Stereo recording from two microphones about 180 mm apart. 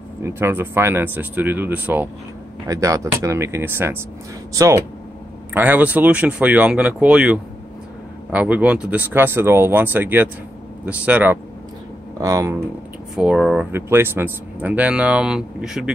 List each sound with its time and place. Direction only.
0.2 s speech: 15° right (ahead or behind)
5.5 s speech: 10° right (ahead or behind)
12.2 s speech: 20° right (ahead or behind)
13.1 s speech: 5° right (ahead or behind)